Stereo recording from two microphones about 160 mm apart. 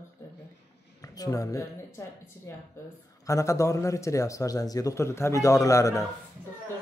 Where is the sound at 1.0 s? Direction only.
20° left (ahead or behind).